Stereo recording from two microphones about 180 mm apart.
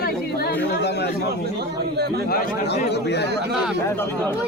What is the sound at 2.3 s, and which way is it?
Speech, 55° left (ahead or behind).